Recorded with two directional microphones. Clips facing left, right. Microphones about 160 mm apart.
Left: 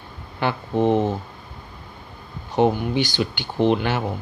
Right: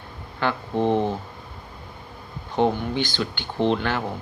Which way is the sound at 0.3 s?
15° left (ahead or behind).